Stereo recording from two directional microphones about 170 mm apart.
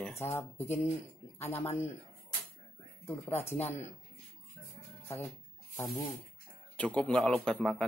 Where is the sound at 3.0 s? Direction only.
15° left (ahead or behind).